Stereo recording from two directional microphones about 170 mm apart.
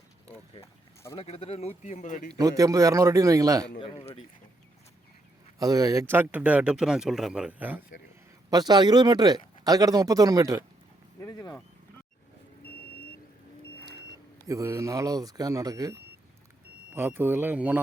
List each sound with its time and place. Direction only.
1.1 s a man's voice: 35° left (ahead or behind)
2.4 s speech: 20° right (ahead or behind)
3.8 s speech: 30° left (ahead or behind)
5.5 s speech: 20° right (ahead or behind)
8.4 s speech: 25° right (ahead or behind)
11.2 s a sound: 20° left (ahead or behind)
14.4 s speech: 20° right (ahead or behind)